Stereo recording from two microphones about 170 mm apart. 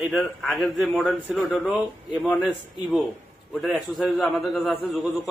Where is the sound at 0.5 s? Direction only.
10° left (ahead or behind).